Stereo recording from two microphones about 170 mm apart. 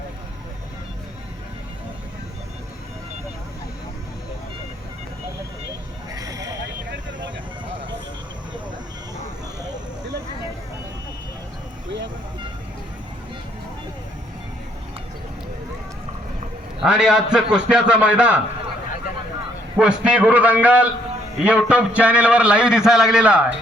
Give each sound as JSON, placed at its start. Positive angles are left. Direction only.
{"t": 6.1, "sound": "a sound", "side_deg": -20}
{"t": 16.8, "sound": "a man's voice", "side_deg": -5}
{"t": 19.7, "sound": "a man's voice", "side_deg": -5}